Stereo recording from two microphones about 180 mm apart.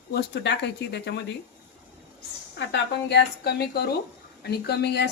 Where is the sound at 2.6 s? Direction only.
75° left (ahead or behind).